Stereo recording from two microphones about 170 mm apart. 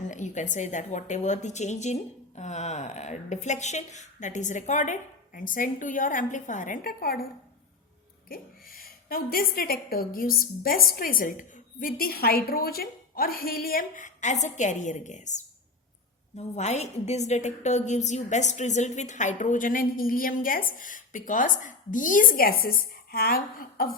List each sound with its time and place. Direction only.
0.1 s a woman's voice: 45° left (ahead or behind); by 7.3 s 60° left (ahead or behind)
8.3 s a woman's voice: 60° left (ahead or behind)